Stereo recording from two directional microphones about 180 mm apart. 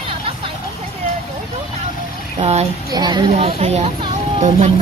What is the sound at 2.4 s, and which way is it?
Speech, 35° right (ahead or behind).